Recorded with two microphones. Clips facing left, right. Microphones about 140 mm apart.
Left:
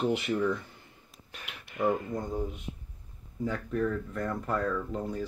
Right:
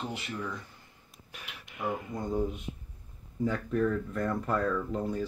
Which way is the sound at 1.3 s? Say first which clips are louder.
Left 1 dB; 10° right (ahead or behind).